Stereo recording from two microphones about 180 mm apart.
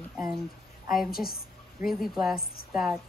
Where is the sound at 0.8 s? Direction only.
Centre (ahead or behind).